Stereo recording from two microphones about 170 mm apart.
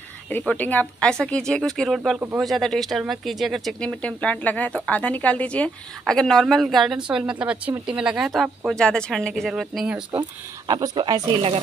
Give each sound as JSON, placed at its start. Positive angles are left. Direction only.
{"t": 0.3, "sound": "a woman's voice", "side_deg": 10}
{"t": 10.7, "sound": "speech", "side_deg": -20}